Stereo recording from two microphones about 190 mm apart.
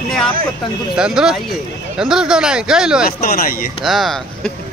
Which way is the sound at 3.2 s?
50° left (ahead or behind).